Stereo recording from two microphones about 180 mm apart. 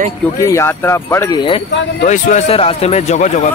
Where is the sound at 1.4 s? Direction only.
30° left (ahead or behind).